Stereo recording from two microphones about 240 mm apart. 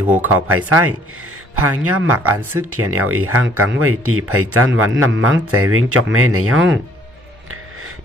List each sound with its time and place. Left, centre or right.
0.0 s speech: centre
0.3 s a man's voice: right